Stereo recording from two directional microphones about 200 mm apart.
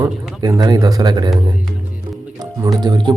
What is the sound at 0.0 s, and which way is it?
Speech, 15° right (ahead or behind).